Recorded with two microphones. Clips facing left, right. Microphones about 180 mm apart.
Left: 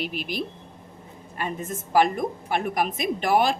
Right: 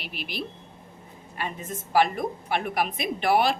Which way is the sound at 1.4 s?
45° left (ahead or behind).